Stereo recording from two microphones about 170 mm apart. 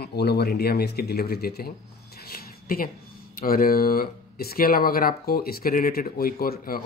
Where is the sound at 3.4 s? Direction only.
60° left (ahead or behind).